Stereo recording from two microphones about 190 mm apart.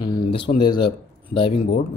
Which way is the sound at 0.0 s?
25° left (ahead or behind).